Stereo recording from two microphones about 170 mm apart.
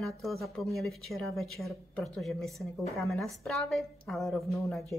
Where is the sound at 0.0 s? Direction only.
Centre (ahead or behind).